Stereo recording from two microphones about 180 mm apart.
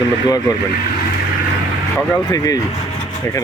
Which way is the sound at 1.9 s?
15° left (ahead or behind).